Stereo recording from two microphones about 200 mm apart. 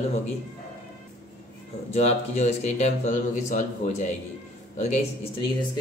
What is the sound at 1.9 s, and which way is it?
Speech, 35° left (ahead or behind).